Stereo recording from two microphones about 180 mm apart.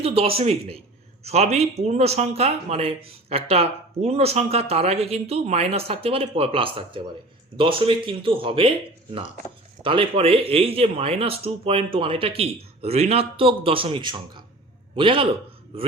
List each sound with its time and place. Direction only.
0.0 s a man's voice: 35° right (ahead or behind)
9.8 s a man's voice: 30° right (ahead or behind)